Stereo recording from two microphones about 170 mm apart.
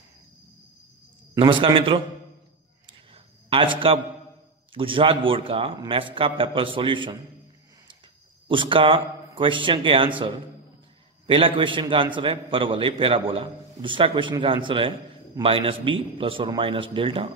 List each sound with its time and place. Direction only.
1.4 s a man's voice: 30° right (ahead or behind)
2.9 s a sound: 35° right (ahead or behind)
4.7 s a man's voice: 30° right (ahead or behind)
8.5 s a man's voice: 30° right (ahead or behind)